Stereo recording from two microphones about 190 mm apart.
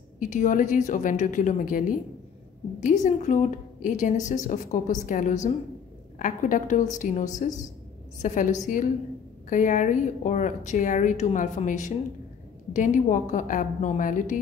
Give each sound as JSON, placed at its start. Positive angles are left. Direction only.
{"t": 0.2, "sound": "a woman's voice", "side_deg": 45}